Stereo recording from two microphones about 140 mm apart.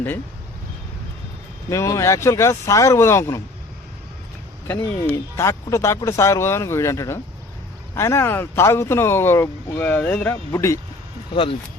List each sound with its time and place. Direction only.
1.7 s speech: 20° left (ahead or behind)
4.7 s speech: 20° left (ahead or behind)